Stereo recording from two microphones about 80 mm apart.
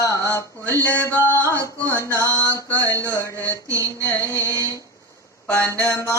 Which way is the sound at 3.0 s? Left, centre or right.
Left.